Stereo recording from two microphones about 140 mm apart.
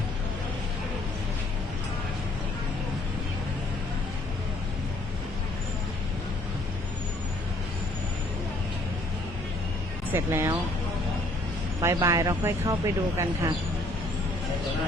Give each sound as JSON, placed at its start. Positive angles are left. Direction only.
{"t": 10.1, "sound": "speech", "side_deg": -15}
{"t": 11.8, "sound": "speech", "side_deg": -20}